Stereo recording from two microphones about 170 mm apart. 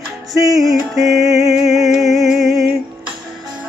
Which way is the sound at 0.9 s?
Centre (ahead or behind).